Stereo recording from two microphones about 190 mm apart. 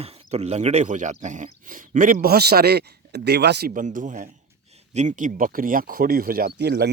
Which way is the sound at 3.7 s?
45° right (ahead or behind).